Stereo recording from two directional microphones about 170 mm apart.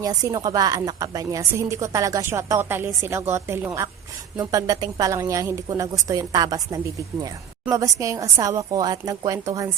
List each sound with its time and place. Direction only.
0.0 s a woman's voice: 20° right (ahead or behind)